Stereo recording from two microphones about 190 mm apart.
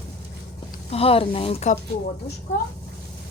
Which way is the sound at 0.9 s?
30° left (ahead or behind).